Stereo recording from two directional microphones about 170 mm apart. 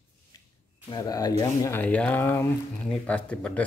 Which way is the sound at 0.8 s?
25° left (ahead or behind).